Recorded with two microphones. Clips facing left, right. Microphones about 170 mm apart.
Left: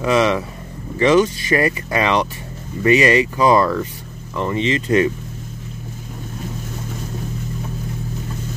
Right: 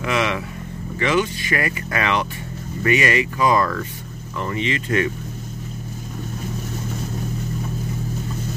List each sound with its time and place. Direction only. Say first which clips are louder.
0.0 s speech: left 6 dB; 35° left (ahead or behind)